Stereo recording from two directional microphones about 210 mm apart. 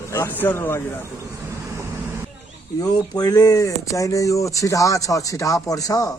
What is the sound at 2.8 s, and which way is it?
A man's voice, 15° left (ahead or behind).